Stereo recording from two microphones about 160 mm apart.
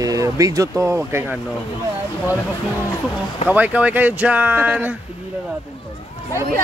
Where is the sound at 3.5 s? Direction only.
10° right (ahead or behind).